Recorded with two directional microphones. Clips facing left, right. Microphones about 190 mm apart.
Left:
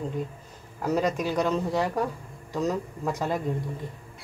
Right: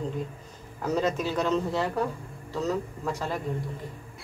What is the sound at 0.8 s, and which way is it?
Speech, 10° left (ahead or behind).